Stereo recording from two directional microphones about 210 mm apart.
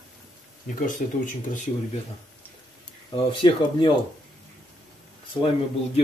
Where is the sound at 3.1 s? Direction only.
20° left (ahead or behind).